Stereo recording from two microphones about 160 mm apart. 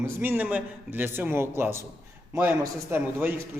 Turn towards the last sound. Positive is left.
turn(degrees=-15)  # may be behind; listen again after turning